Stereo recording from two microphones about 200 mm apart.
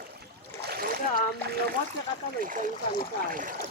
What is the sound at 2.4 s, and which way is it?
Speech, 40° right (ahead or behind).